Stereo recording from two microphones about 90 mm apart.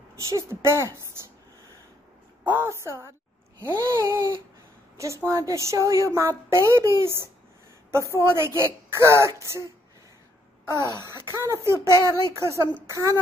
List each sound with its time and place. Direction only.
0.3 s a woman's voice: 35° right (ahead or behind)
2.5 s a woman's voice: 30° right (ahead or behind)
10.7 s a woman's voice: 35° right (ahead or behind)